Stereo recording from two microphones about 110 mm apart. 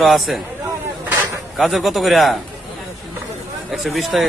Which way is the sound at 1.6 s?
Centre (ahead or behind).